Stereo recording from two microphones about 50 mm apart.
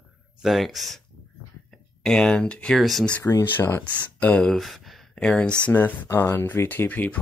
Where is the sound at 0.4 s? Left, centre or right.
Centre.